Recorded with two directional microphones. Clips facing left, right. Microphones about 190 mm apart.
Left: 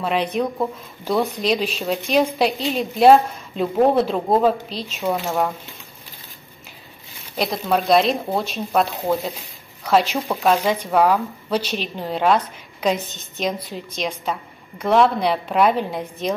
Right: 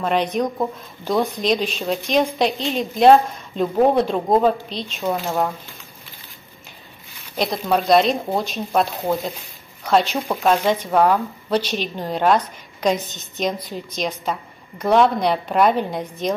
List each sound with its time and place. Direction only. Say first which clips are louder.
0.0 s speech: right 1 dB; 5° left (ahead or behind)
1.4 s speech: right 1 dB; 5° left (ahead or behind)
7.3 s speech: right 1 dB; 5° left (ahead or behind)